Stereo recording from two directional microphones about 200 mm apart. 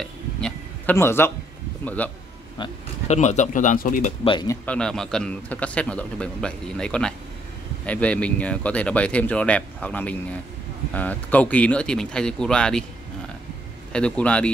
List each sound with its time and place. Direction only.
0.0 s a sound: 5° left (ahead or behind)
2.0 s speech: 10° left (ahead or behind)
2.6 s speech: 35° left (ahead or behind)
4.2 s speech: 25° left (ahead or behind)
4.6 s a man's voice: 5° left (ahead or behind)
13.9 s a man's voice: 5° left (ahead or behind)